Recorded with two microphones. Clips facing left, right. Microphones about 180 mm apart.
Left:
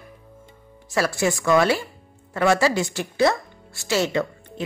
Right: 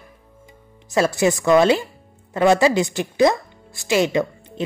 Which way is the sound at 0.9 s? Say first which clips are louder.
Right 4 dB; 20° right (ahead or behind).